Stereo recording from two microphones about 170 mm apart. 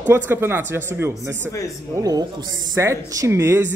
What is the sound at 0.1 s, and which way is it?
A woman's voice, 15° right (ahead or behind).